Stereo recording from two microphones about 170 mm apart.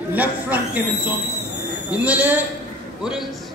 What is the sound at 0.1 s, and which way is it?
Speech, 10° right (ahead or behind).